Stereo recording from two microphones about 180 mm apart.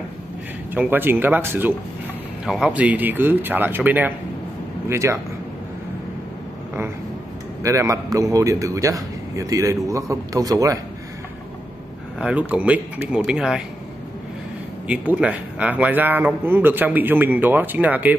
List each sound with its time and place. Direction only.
0.7 s speech: 10° right (ahead or behind)
7.6 s speech: 15° right (ahead or behind)
12.2 s speech: 5° right (ahead or behind)
14.9 s speech: 5° right (ahead or behind)